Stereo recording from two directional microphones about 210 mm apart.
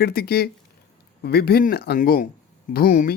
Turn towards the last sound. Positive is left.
turn(degrees=40)  # may be behind; listen again after turning